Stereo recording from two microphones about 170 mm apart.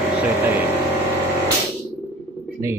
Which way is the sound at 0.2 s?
10° right (ahead or behind).